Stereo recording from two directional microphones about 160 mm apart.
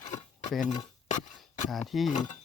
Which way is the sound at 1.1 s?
50° left (ahead or behind).